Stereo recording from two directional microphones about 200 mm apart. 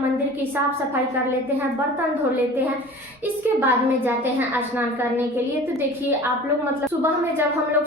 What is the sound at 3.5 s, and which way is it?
A woman's voice, 10° right (ahead or behind).